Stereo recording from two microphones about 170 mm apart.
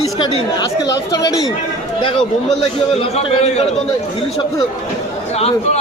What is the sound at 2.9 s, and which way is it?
Speech, 35° left (ahead or behind).